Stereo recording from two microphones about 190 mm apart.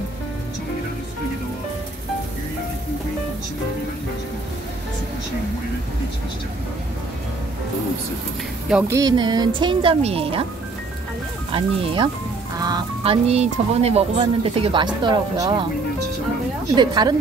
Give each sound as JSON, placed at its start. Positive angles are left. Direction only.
{"t": 8.6, "sound": "speech", "side_deg": -10}
{"t": 11.5, "sound": "speech", "side_deg": -25}
{"t": 16.7, "sound": "speech", "side_deg": -20}